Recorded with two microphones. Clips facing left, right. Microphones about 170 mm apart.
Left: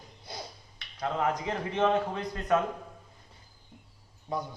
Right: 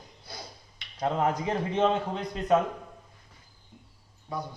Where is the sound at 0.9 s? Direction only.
30° right (ahead or behind).